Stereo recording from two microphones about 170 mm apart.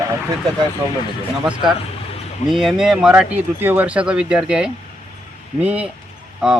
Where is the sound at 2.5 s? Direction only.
Centre (ahead or behind).